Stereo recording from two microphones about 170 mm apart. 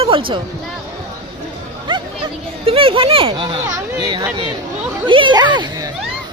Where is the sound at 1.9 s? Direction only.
30° right (ahead or behind).